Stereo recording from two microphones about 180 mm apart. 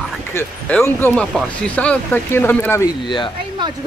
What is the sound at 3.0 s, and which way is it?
Speech, 25° left (ahead or behind).